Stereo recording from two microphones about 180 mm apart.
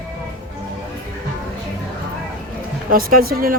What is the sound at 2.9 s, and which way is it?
Speech, 55° right (ahead or behind).